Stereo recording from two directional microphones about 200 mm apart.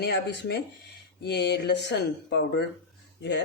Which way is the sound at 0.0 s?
55° left (ahead or behind).